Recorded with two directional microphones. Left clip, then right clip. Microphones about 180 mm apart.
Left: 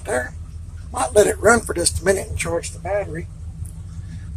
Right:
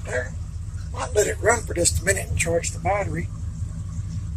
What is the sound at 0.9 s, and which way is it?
A man's voice, 20° left (ahead or behind).